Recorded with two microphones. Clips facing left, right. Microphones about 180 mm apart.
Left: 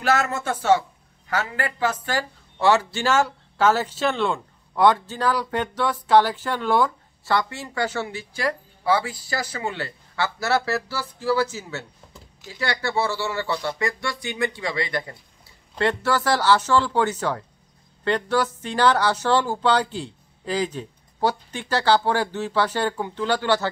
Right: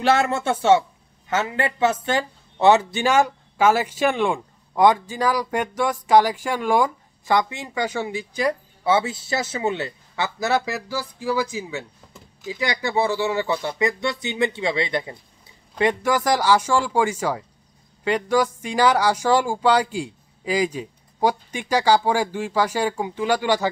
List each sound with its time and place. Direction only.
0.0 s speech: 25° right (ahead or behind)